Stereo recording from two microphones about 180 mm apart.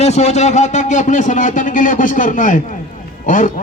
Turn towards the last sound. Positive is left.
turn(degrees=45)  # may be behind; listen again after turning